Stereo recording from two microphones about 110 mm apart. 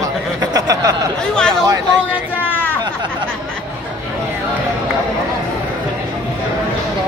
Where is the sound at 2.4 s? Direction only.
15° left (ahead or behind).